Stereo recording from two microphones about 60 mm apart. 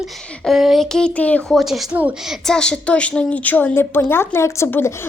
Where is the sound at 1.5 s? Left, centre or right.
Centre.